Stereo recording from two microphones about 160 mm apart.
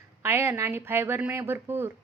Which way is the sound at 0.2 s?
15° right (ahead or behind).